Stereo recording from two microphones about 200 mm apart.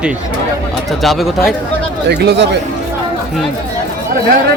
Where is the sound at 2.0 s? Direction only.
55° right (ahead or behind).